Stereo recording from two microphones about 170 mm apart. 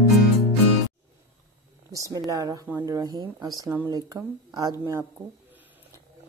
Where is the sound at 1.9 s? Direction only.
20° right (ahead or behind).